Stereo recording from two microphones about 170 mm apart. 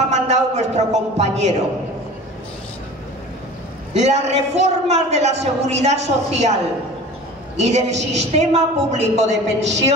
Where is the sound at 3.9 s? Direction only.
40° right (ahead or behind).